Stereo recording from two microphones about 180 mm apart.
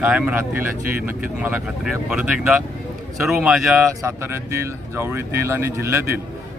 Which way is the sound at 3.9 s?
15° right (ahead or behind).